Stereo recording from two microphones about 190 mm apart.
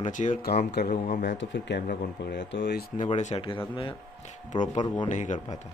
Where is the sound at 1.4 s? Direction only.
70° left (ahead or behind).